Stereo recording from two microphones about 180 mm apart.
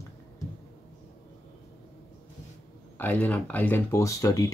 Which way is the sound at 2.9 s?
10° left (ahead or behind).